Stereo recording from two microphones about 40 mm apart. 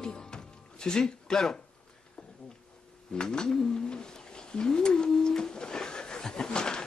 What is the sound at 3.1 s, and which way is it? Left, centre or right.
Speech, centre.